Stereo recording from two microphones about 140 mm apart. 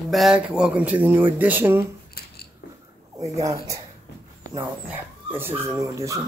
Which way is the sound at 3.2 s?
25° right (ahead or behind).